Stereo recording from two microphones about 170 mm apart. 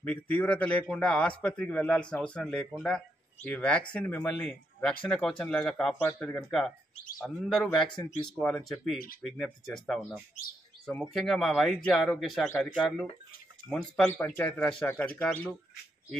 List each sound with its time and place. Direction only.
0.0 s speech: 10° left (ahead or behind)